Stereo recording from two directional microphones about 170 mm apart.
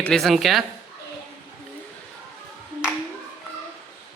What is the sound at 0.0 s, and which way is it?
Speech, centre (ahead or behind).